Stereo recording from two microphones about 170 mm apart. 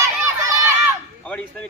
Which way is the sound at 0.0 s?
15° right (ahead or behind).